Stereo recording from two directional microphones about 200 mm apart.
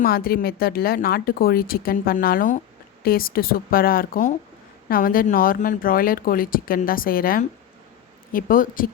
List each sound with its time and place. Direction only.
0.0 s speech: 50° left (ahead or behind)